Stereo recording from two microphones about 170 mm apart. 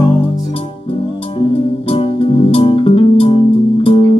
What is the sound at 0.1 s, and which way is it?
Music, 35° left (ahead or behind).